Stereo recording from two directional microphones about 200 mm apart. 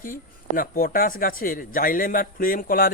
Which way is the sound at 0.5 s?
45° left (ahead or behind).